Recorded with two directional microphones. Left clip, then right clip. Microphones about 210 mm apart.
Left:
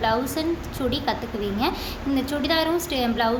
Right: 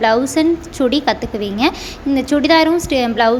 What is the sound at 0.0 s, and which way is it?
A woman's voice, 35° right (ahead or behind).